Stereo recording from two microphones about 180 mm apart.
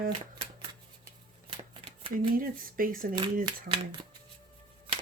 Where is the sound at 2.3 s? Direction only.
50° right (ahead or behind).